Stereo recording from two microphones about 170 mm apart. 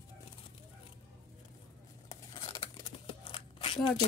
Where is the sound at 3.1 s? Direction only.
30° left (ahead or behind).